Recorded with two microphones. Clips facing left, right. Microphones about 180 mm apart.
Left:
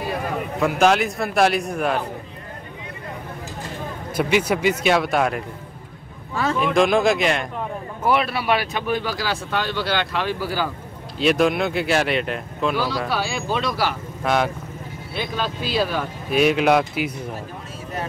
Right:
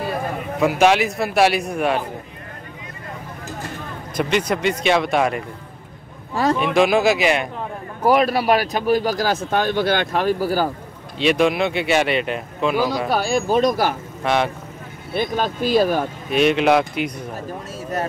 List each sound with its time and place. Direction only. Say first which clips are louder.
0.6 s speech: right 2 dB; centre (ahead or behind)
4.1 s speech: even; 5° left (ahead or behind)
6.3 s speech: right 4 dB; 35° right (ahead or behind)
6.6 s speech: even; 5° right (ahead or behind)
8.0 s speech: right 5 dB; 40° right (ahead or behind)
11.1 s speech: right 1 dB; centre (ahead or behind)
13.1 s speech: right 6 dB; 45° right (ahead or behind)
14.2 s speech: right 1 dB; centre (ahead or behind)
15.1 s speech: right 5 dB; 50° right (ahead or behind)
16.3 s speech: right 1 dB; 5° left (ahead or behind)